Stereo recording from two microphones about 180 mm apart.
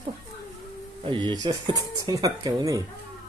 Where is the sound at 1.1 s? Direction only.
25° right (ahead or behind).